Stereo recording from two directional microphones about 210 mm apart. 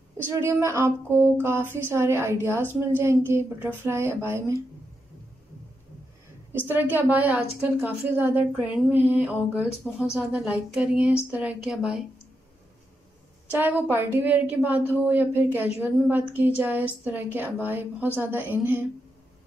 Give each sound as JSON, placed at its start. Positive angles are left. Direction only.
{"t": 0.2, "sound": "speech", "side_deg": -10}
{"t": 6.5, "sound": "a woman's voice", "side_deg": -10}
{"t": 13.5, "sound": "speech", "side_deg": -5}